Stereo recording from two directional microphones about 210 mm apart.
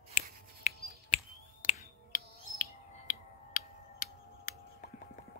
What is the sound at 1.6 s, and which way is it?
Finger snapping, 35° left (ahead or behind).